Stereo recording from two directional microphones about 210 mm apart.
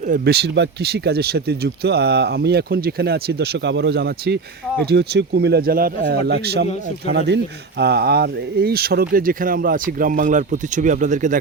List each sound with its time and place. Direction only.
0.1 s speech: 50° right (ahead or behind)